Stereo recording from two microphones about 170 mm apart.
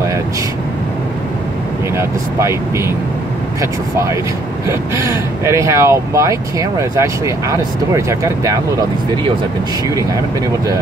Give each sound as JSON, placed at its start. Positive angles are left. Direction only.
{"t": 2.0, "sound": "speech", "side_deg": -15}
{"t": 4.6, "sound": "speech", "side_deg": -20}